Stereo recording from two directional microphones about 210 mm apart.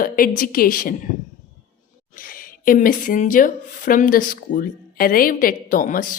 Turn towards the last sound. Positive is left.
turn(degrees=40)  # may be behind; listen again after turning